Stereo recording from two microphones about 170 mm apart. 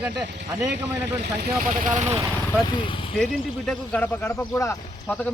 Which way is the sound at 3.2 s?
5° left (ahead or behind).